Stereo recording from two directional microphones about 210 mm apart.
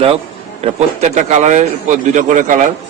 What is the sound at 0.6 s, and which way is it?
A man's voice, 35° right (ahead or behind).